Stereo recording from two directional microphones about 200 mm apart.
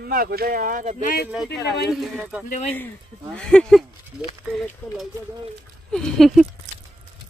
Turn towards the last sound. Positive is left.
turn(degrees=0)  # may be behind; listen again after turning